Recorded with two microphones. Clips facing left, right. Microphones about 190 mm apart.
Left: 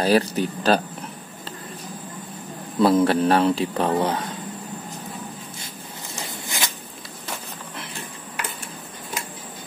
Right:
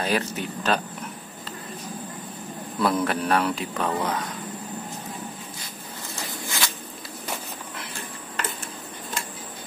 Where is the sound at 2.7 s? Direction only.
25° left (ahead or behind).